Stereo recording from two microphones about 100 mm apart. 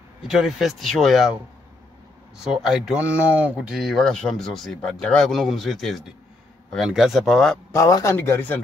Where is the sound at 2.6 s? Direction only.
5° right (ahead or behind).